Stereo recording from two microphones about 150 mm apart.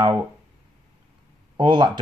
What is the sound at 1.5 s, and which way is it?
Speech, 30° right (ahead or behind).